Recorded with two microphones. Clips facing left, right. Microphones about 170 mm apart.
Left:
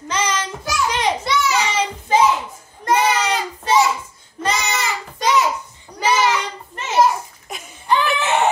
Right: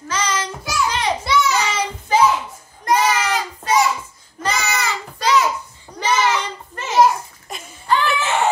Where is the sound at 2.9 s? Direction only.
25° left (ahead or behind).